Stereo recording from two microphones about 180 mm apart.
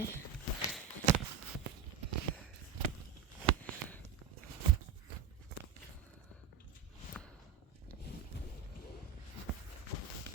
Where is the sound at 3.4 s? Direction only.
10° left (ahead or behind).